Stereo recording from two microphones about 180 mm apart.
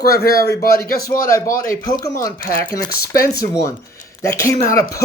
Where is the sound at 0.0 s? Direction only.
60° left (ahead or behind).